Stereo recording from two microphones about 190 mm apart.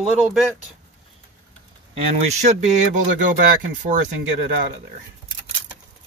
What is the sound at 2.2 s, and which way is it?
Speech, 35° right (ahead or behind).